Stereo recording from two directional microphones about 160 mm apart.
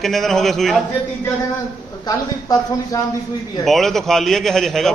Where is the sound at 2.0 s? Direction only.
25° left (ahead or behind).